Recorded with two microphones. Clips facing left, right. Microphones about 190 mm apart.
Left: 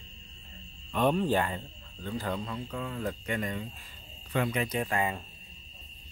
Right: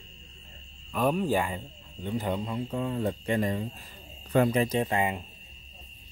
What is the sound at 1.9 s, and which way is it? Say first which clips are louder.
Speech: right 3 dB; 20° right (ahead or behind).